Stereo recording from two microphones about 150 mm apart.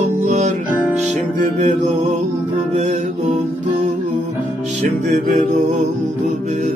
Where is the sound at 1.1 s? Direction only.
50° right (ahead or behind).